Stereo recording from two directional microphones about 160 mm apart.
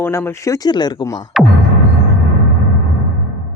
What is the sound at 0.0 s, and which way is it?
Speech, 15° left (ahead or behind).